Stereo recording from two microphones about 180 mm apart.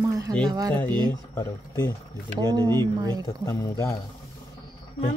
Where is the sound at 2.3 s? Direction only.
25° right (ahead or behind).